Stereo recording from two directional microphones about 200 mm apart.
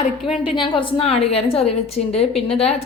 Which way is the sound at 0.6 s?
25° left (ahead or behind).